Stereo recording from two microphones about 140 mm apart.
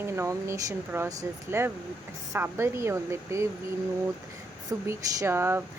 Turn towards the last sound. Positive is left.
turn(degrees=-15)  # may be behind; listen again after turning